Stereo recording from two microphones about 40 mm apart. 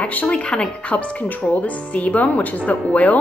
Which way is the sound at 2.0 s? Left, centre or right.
Left.